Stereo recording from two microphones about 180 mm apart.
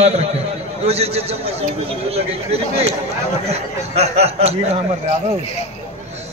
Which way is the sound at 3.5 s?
35° right (ahead or behind).